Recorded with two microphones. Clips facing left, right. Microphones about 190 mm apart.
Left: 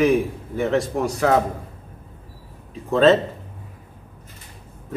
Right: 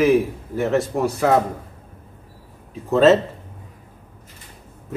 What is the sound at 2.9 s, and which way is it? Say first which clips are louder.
Speech: right 1 dB; 5° right (ahead or behind).